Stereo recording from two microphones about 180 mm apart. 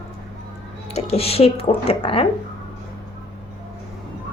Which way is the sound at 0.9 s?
35° left (ahead or behind).